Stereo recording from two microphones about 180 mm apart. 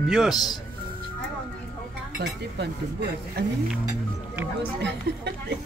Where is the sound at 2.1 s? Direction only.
70° right (ahead or behind).